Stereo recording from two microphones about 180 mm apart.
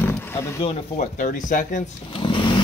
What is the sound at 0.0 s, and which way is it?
Roaring cats, 10° left (ahead or behind).